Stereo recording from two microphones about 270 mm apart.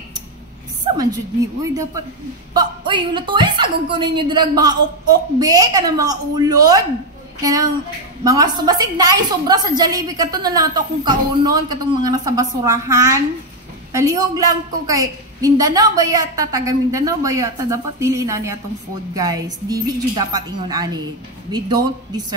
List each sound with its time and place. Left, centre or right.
0.9 s a woman's voice: centre
8.2 s a woman's voice: centre